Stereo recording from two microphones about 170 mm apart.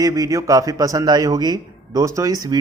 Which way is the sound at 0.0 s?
20° right (ahead or behind).